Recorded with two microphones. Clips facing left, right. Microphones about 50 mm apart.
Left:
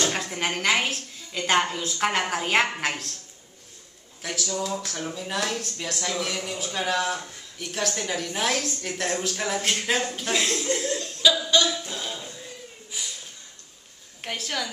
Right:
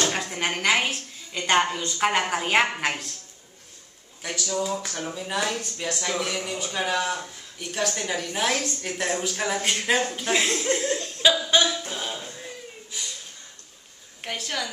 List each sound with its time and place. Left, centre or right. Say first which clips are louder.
0.1 s a man's voice: even; centre
4.2 s a man's voice: right 1 dB; centre
10.3 s speech: right 2 dB; centre
10.7 s speech: right 2 dB; right
11.8 s a sound: right 1 dB; right
14.2 s a man's voice: even; centre